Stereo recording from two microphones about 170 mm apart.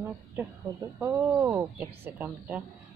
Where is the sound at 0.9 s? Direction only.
10° right (ahead or behind).